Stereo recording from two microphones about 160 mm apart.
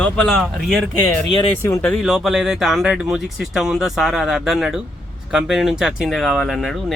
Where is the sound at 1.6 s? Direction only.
15° left (ahead or behind).